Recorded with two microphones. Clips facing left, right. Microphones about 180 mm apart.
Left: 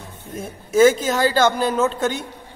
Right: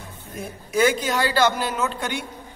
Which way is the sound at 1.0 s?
45° left (ahead or behind).